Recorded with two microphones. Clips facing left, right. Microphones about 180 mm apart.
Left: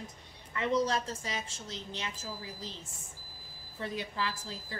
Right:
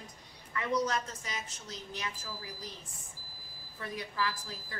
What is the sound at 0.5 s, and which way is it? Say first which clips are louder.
A woman's voice: left 2 dB; 25° left (ahead or behind).